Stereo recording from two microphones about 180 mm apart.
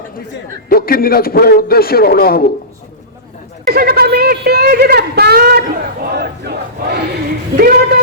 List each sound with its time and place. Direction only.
0.7 s a man's voice: 55° left (ahead or behind)
3.7 s a woman's voice: 55° right (ahead or behind)